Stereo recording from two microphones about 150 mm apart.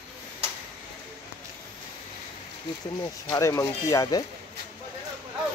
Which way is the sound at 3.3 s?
20° left (ahead or behind).